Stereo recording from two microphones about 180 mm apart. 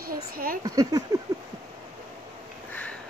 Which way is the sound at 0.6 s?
20° right (ahead or behind).